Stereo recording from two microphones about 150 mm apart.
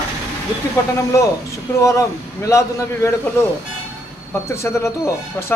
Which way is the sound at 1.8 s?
20° left (ahead or behind).